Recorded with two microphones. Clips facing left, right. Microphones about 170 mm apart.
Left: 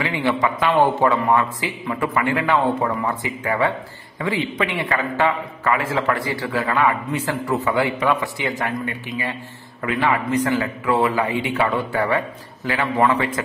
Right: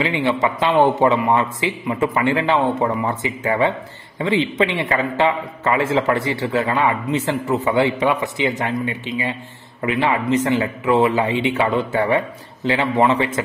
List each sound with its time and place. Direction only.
0.0 s a man's voice: 20° right (ahead or behind)